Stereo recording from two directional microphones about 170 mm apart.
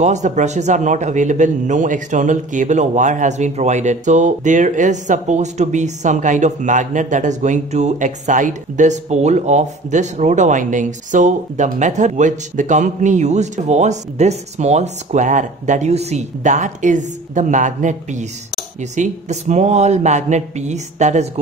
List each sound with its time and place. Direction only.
0.0 s a man's voice: 45° right (ahead or behind)